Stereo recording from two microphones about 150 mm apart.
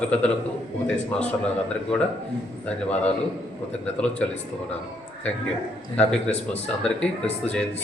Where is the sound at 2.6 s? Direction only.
10° left (ahead or behind).